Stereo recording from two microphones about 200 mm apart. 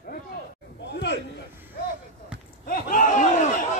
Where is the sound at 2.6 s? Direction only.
45° left (ahead or behind).